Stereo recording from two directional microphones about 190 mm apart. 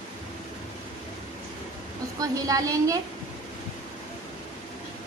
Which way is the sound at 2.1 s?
20° right (ahead or behind).